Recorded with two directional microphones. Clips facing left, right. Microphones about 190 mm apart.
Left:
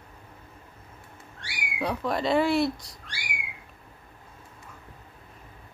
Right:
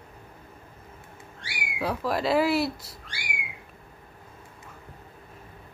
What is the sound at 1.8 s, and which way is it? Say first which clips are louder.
Speech: even; 5° right (ahead or behind).